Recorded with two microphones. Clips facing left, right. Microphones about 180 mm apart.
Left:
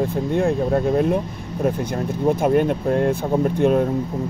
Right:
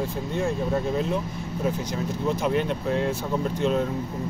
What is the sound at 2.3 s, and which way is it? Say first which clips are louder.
Speech: left 8 dB; 50° left (ahead or behind).